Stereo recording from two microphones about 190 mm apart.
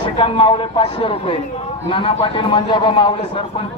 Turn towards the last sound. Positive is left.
turn(degrees=25)  # may be behind; listen again after turning